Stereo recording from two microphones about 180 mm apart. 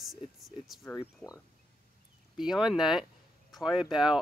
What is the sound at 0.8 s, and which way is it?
Speech, 15° left (ahead or behind).